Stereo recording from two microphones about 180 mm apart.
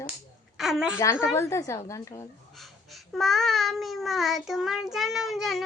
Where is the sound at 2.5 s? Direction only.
Centre (ahead or behind).